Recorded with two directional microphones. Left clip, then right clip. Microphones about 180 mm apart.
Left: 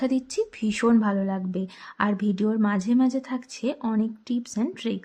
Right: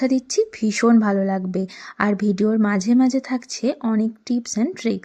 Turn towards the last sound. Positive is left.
turn(degrees=-25)  # may be behind; listen again after turning